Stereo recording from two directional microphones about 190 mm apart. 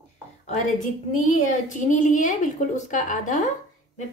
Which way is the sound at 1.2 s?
40° left (ahead or behind).